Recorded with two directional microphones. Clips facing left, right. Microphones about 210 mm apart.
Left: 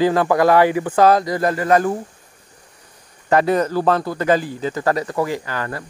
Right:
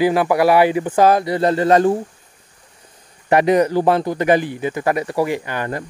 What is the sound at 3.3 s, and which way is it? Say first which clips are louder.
Speech: right 2 dB; 15° right (ahead or behind).